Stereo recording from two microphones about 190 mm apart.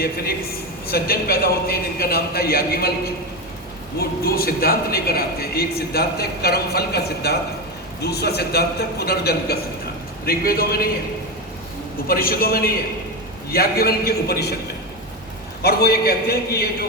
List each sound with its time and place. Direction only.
0.0 s a man's voice: 55° left (ahead or behind)
3.9 s a man's voice: 55° left (ahead or behind)
12.0 s a man's voice: 50° left (ahead or behind)
15.6 s a man's voice: 55° left (ahead or behind)